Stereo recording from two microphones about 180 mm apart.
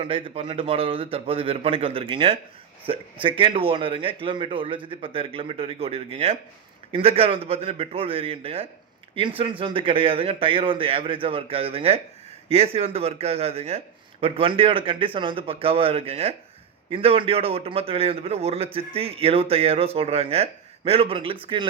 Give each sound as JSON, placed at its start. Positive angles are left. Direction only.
{"t": 0.0, "sound": "a man's voice", "side_deg": -30}